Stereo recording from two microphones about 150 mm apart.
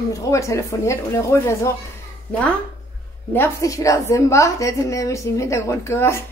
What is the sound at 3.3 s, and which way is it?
A woman's voice, 20° left (ahead or behind).